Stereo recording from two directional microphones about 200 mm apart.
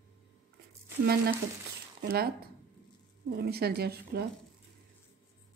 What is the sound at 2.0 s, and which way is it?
Speech, 50° right (ahead or behind).